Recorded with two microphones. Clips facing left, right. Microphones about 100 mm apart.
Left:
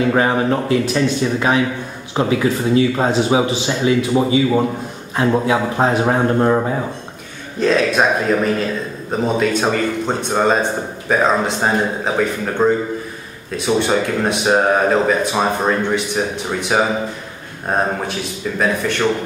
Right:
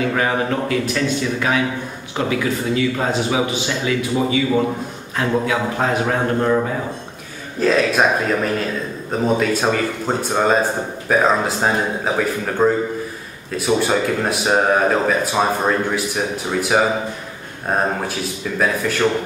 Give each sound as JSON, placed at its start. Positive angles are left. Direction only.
{"t": 0.1, "sound": "speech", "side_deg": 25}
{"t": 7.6, "sound": "speech", "side_deg": 0}